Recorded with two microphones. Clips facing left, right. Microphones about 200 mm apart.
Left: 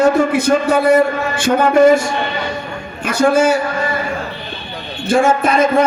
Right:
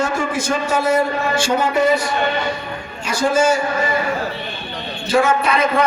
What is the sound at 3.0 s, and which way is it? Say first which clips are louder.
Speech: left 4 dB; 55° left (ahead or behind).